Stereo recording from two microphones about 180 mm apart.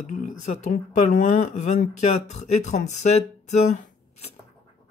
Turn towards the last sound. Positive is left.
turn(degrees=40)  # may be behind; listen again after turning